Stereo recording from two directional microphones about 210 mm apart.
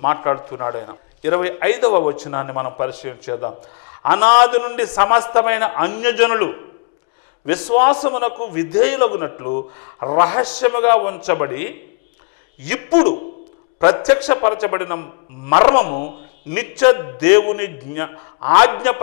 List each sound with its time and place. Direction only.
0.0 s a man's voice: 15° left (ahead or behind)